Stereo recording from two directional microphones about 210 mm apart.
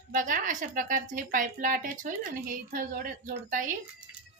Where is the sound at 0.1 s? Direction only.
40° right (ahead or behind).